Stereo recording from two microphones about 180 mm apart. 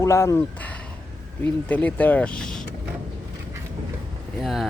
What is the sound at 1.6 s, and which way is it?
Speech, 10° left (ahead or behind).